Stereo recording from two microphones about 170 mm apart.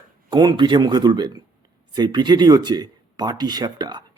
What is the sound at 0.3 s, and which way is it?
A man's voice, 25° right (ahead or behind).